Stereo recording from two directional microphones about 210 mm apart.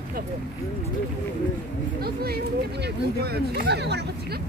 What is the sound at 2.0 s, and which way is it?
Speech, 50° right (ahead or behind).